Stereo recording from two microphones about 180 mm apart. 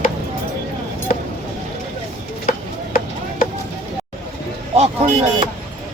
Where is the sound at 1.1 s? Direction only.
45° left (ahead or behind).